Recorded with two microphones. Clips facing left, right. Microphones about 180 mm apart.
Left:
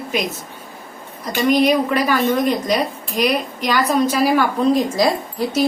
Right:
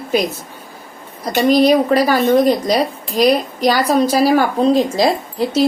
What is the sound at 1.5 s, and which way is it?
A woman's voice, 35° right (ahead or behind).